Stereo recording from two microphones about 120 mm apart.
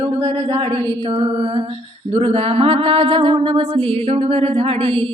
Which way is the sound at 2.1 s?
50° right (ahead or behind).